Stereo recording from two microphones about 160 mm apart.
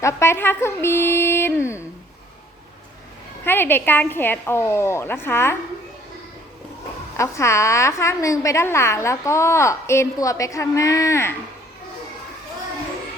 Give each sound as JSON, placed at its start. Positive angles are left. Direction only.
{"t": 0.0, "sound": "a woman's voice", "side_deg": 15}
{"t": 3.4, "sound": "a woman's voice", "side_deg": 15}
{"t": 7.2, "sound": "a woman's voice", "side_deg": 15}